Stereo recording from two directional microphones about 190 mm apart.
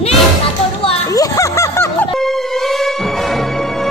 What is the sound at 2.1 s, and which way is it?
Music, centre (ahead or behind).